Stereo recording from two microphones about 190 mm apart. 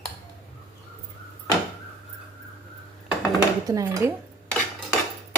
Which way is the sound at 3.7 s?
15° right (ahead or behind).